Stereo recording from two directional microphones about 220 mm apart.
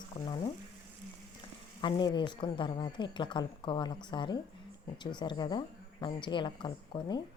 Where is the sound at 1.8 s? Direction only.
20° left (ahead or behind).